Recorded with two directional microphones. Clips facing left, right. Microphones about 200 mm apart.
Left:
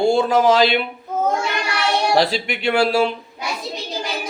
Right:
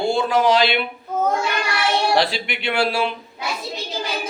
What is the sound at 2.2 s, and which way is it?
Speech, 40° left (ahead or behind).